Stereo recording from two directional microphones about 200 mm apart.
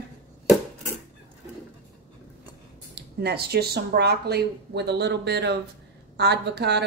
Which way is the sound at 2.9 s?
55° right (ahead or behind).